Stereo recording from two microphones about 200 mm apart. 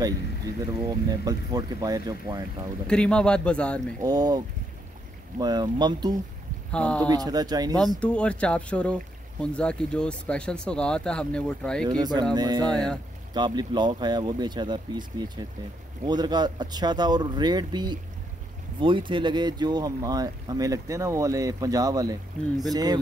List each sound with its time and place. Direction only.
1.2 s speech: 20° right (ahead or behind)
2.9 s speech: 5° left (ahead or behind)
4.0 s speech: 20° right (ahead or behind)
5.4 s speech: 20° right (ahead or behind)
6.7 s speech: 5° left (ahead or behind)
7.1 s speech: 20° right (ahead or behind)
8.0 s speech: 5° left (ahead or behind)
11.8 s speech: 20° right (ahead or behind)
12.6 s speech: 5° left (ahead or behind)
13.3 s speech: 20° right (ahead or behind)